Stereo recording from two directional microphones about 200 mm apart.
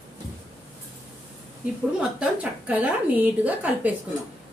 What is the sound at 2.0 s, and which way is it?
Speech, 5° right (ahead or behind).